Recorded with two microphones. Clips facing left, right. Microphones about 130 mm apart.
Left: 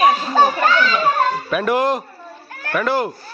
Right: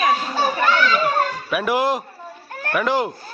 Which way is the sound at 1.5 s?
10° right (ahead or behind).